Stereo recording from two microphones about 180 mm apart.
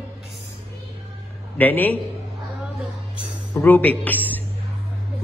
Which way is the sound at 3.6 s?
10° left (ahead or behind).